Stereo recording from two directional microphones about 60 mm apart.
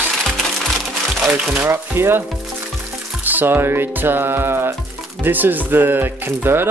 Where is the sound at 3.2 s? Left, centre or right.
Right.